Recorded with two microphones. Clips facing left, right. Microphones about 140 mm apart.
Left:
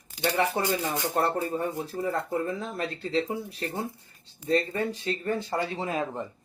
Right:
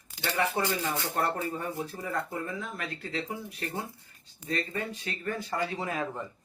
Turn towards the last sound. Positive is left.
turn(degrees=25)  # may be behind; listen again after turning